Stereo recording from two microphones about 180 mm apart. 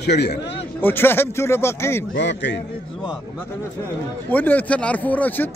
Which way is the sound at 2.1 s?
80° left.